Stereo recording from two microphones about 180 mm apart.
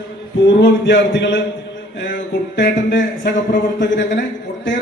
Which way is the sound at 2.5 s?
70° left (ahead or behind).